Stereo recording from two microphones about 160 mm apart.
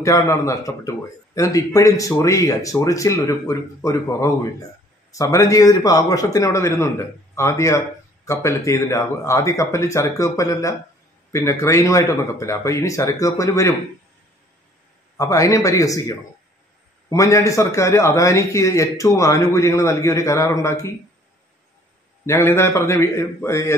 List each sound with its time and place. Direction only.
0.0 s a man's voice: 20° left (ahead or behind)
15.1 s speech: 20° left (ahead or behind)
22.2 s a man's voice: 15° left (ahead or behind)